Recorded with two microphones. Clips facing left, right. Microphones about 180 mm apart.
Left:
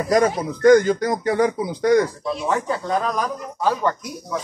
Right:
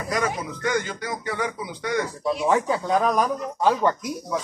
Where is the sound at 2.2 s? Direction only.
15° right (ahead or behind).